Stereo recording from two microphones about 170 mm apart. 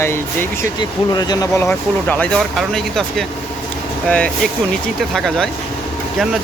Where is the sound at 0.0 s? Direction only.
15° left (ahead or behind).